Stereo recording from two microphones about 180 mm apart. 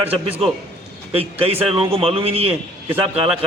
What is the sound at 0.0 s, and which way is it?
A man's voice, 35° right (ahead or behind).